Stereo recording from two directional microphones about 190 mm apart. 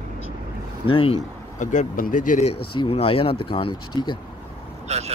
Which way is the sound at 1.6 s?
40° left (ahead or behind).